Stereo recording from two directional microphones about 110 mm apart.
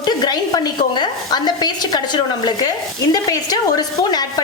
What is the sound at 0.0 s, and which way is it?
A woman's voice, 40° left (ahead or behind).